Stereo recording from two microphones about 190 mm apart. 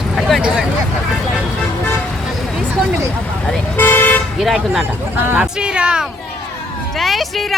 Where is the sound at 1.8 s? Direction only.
10° left (ahead or behind).